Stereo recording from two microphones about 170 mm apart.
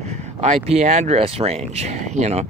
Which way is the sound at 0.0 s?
40° right (ahead or behind).